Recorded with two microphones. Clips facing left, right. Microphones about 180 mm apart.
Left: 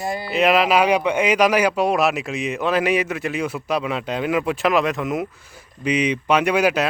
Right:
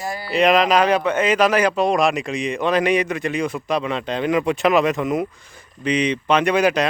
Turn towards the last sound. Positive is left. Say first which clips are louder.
# right 1 dB
turn(degrees=5)  # may be behind; listen again after turning